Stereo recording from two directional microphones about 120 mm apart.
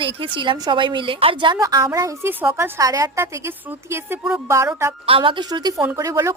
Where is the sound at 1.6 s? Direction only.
30° right (ahead or behind).